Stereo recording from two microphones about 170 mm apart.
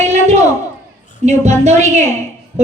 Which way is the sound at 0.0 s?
40° right (ahead or behind).